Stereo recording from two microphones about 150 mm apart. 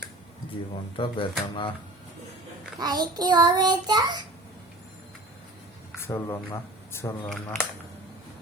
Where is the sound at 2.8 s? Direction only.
25° right (ahead or behind).